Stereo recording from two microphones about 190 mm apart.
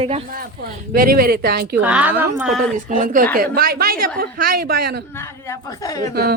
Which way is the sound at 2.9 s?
45° right (ahead or behind).